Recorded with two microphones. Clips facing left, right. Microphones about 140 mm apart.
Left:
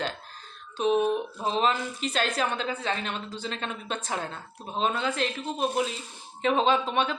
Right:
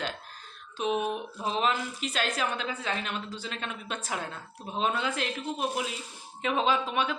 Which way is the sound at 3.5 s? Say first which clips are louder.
Left 4 dB; 35° left (ahead or behind).